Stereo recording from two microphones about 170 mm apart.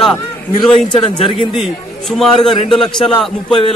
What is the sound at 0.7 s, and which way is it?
Speech, 30° left (ahead or behind).